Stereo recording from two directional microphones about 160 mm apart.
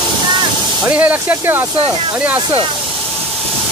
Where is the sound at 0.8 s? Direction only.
10° right (ahead or behind).